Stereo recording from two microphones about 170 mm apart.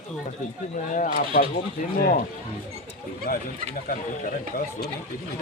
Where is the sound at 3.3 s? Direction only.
55° left (ahead or behind).